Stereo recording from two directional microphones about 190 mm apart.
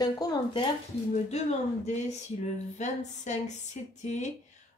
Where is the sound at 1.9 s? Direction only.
35° left (ahead or behind).